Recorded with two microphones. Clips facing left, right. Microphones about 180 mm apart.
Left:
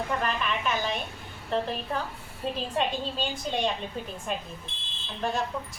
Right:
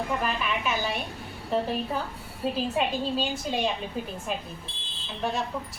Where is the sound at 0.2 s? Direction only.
5° right (ahead or behind).